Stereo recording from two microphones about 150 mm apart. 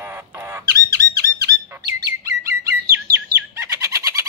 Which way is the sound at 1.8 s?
25° right (ahead or behind).